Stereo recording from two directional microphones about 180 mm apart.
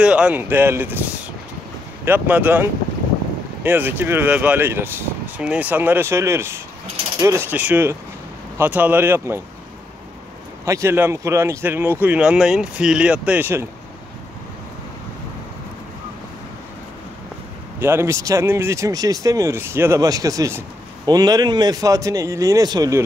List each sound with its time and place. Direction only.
0.0 s speech: 5° right (ahead or behind)
10.6 s speech: 15° right (ahead or behind)
17.7 s speech: 15° right (ahead or behind)